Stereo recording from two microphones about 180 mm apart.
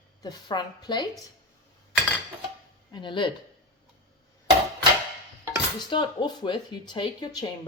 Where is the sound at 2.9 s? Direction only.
25° left (ahead or behind).